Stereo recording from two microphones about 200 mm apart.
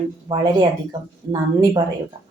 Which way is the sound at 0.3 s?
20° right (ahead or behind).